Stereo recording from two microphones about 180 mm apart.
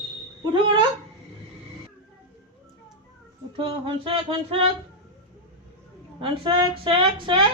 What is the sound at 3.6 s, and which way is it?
Speech, 30° right (ahead or behind).